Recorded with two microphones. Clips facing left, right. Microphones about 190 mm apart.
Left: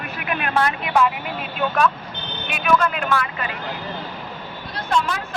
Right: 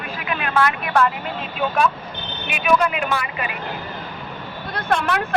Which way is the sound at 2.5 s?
5° right (ahead or behind).